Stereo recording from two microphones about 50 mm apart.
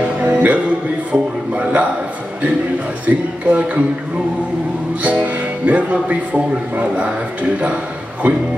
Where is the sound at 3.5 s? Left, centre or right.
Right.